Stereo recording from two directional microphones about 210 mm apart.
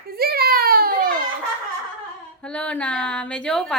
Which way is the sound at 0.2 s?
45° right (ahead or behind).